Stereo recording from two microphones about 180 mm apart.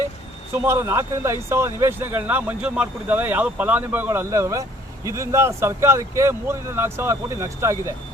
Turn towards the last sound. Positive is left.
turn(degrees=-15)  # may be behind; listen again after turning